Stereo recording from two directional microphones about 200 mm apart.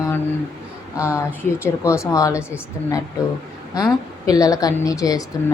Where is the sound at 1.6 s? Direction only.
15° left (ahead or behind).